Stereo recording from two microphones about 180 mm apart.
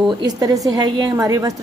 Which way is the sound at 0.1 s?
20° right (ahead or behind).